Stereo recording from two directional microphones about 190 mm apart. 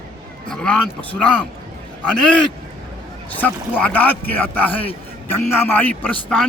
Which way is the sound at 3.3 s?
10° left (ahead or behind).